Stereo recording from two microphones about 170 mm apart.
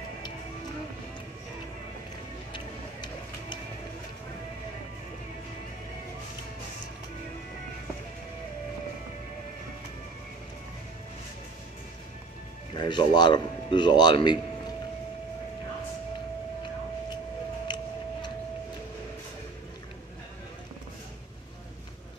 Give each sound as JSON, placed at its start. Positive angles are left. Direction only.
{"t": 2.5, "sound": "vehicle", "side_deg": 25}
{"t": 12.7, "sound": "a man's voice", "side_deg": 25}
{"t": 17.7, "sound": "a sound", "side_deg": 25}